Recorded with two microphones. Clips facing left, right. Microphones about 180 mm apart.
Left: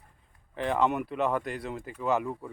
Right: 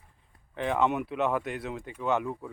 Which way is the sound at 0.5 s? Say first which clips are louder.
Even; centre (ahead or behind).